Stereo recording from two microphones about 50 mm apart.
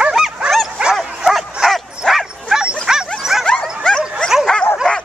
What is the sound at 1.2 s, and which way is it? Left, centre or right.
Dog, centre.